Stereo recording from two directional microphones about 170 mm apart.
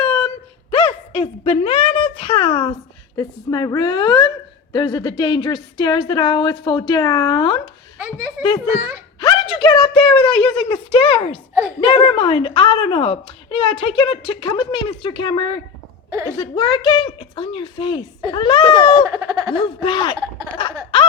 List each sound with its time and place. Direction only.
0.7 s a woman's voice: 30° left (ahead or behind)
7.9 s speech: 10° right (ahead or behind)
9.2 s a woman's voice: 25° left (ahead or behind)
10.2 s speech: 5° left (ahead or behind)
10.7 s a woman's voice: 30° left (ahead or behind)
19.1 s speech: 20° right (ahead or behind)
19.5 s a woman's voice: 30° left (ahead or behind)